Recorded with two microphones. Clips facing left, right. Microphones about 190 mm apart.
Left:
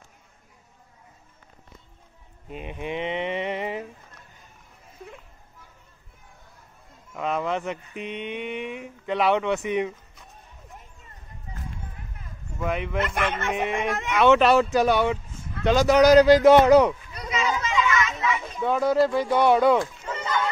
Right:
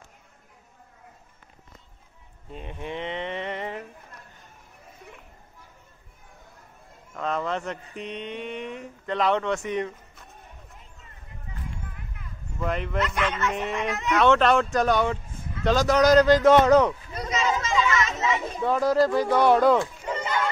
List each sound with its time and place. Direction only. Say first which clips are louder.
2.5 s mantra: left 3 dB; 15° left (ahead or behind)
7.2 s mantra: left 2 dB; 10° left (ahead or behind)
12.5 s speech: left 1 dB; 5° left (ahead or behind)
13.0 s speech: right 2 dB; 50° left (ahead or behind)
14.1 s speech: left 2 dB; 5° left (ahead or behind)
15.6 s mantra: left 3 dB; 5° left (ahead or behind)
17.1 s a sound: right 2 dB; 45° right (ahead or behind)
17.6 s children playing: even; 35° right (ahead or behind)
18.2 s children playing: right 1 dB; 25° right (ahead or behind)
18.6 s speech: left 1 dB; centre (ahead or behind)